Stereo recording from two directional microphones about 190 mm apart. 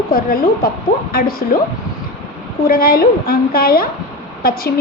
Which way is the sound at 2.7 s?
50° left (ahead or behind).